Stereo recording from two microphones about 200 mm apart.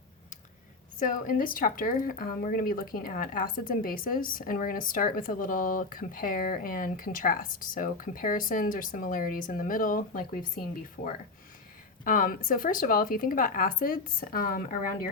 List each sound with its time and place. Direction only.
0.9 s speech: 40° left (ahead or behind)
12.0 s speech: 45° left (ahead or behind)